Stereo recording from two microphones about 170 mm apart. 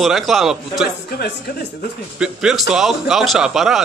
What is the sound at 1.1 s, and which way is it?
Speech, 70° left (ahead or behind).